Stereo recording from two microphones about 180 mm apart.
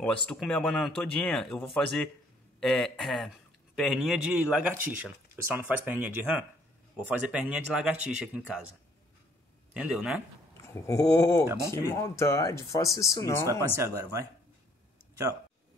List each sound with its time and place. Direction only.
0.0 s speech: 5° left (ahead or behind)
9.8 s speech: 5° right (ahead or behind)
10.6 s speech: 15° left (ahead or behind)
13.7 s speech: 15° right (ahead or behind)